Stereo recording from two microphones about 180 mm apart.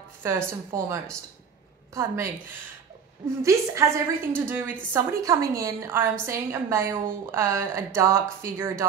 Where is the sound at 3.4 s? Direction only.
15° right (ahead or behind).